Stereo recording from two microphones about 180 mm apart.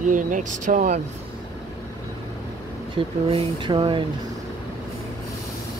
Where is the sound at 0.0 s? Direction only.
45° right (ahead or behind).